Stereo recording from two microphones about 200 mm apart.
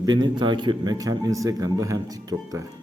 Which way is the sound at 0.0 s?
20° right (ahead or behind).